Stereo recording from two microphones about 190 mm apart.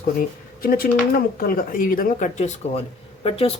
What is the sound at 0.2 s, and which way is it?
Speech, 50° left (ahead or behind).